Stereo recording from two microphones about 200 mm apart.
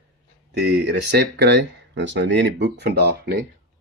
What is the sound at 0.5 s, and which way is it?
Speech, 55° right (ahead or behind).